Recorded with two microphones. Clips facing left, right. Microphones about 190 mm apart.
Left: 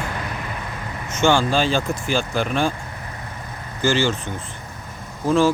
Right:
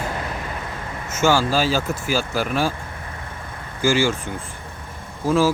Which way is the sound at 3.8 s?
10° right (ahead or behind).